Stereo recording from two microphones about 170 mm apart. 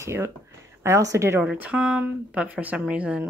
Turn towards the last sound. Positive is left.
turn(degrees=-5)  # may be behind; listen again after turning